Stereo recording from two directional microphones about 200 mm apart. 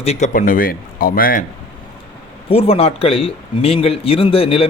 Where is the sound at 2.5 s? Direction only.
30° left (ahead or behind).